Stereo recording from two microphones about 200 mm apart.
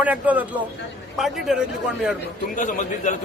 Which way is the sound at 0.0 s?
5° right (ahead or behind).